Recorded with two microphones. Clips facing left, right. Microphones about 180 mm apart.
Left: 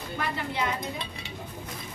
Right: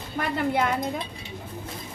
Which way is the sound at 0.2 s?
50° right (ahead or behind).